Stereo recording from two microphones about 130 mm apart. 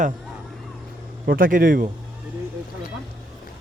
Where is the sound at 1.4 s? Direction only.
90° right.